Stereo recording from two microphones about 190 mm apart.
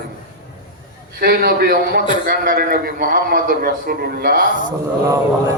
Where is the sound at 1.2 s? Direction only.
55° right (ahead or behind).